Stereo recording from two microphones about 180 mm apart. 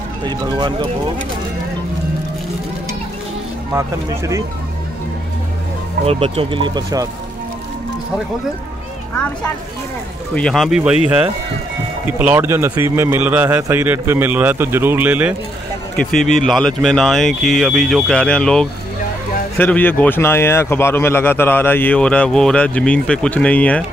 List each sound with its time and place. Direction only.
0.2 s speech: 25° right (ahead or behind)
6.0 s speech: 35° right (ahead or behind)
10.3 s speech: 5° left (ahead or behind)
12.2 s a man's voice: 10° right (ahead or behind)
16.0 s a man's voice: 5° left (ahead or behind)